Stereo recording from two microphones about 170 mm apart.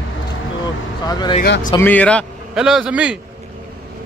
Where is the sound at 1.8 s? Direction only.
10° left (ahead or behind).